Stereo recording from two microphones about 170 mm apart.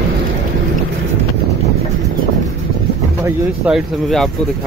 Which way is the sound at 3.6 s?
Centre (ahead or behind).